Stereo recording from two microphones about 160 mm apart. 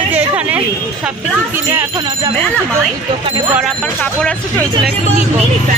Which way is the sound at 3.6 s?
5° left (ahead or behind).